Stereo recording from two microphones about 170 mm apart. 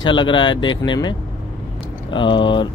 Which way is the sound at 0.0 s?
30° left (ahead or behind).